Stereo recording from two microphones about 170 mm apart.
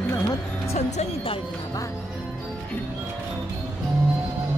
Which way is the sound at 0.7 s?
40° left (ahead or behind).